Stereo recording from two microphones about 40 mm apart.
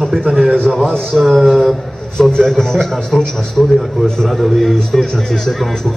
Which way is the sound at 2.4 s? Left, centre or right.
Centre.